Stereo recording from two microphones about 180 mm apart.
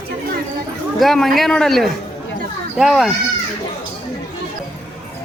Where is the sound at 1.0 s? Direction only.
Centre (ahead or behind).